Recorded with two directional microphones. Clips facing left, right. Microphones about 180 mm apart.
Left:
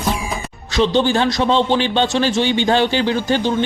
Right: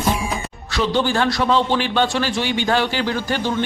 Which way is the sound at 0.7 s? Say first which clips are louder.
Left 4 dB; 25° left (ahead or behind).